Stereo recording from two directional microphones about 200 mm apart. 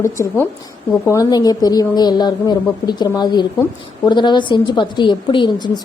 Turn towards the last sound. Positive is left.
turn(degrees=20)  # may be behind; listen again after turning